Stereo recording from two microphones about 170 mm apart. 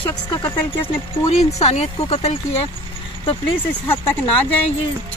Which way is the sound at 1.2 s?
40° left (ahead or behind).